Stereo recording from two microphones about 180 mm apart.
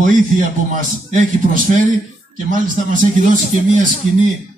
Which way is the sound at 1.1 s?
45° right (ahead or behind).